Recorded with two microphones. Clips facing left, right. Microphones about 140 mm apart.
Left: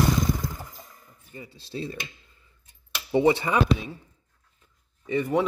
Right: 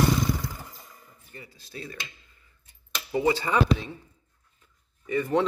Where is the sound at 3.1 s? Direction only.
25° left (ahead or behind).